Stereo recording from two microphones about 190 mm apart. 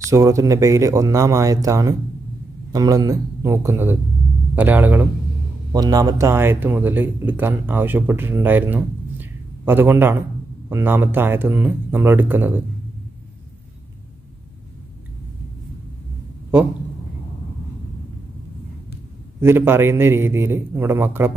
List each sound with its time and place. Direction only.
0.1 s speech: 15° right (ahead or behind)
5.7 s speech: 20° right (ahead or behind)
19.4 s speech: 10° right (ahead or behind)